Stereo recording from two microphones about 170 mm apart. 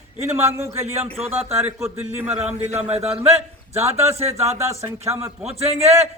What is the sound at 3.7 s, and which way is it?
A man's voice, 15° right (ahead or behind).